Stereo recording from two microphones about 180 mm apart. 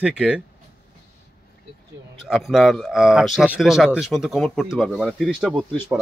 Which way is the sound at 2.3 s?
Centre (ahead or behind).